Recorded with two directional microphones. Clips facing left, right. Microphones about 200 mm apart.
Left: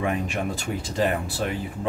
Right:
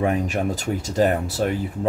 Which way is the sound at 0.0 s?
40° right (ahead or behind).